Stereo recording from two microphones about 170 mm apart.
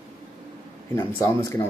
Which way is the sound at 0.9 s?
15° left (ahead or behind).